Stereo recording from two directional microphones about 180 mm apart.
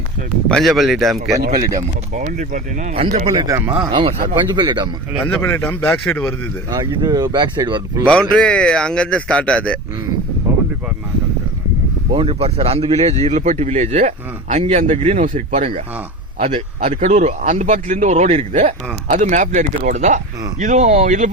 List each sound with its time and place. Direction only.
0.4 s a man's voice: centre (ahead or behind)
2.1 s a man's voice: 45° right (ahead or behind)
3.3 s speech: 15° right (ahead or behind)
5.2 s speech: 15° left (ahead or behind)
6.7 s speech: 20° right (ahead or behind)
8.1 s a man's voice: 5° left (ahead or behind)
12.1 s a man's voice: 30° right (ahead or behind)